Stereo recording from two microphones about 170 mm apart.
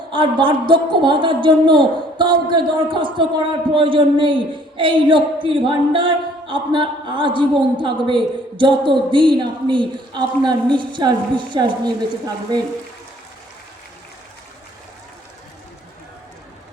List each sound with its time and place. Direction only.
0.1 s a man's voice: 30° right (ahead or behind)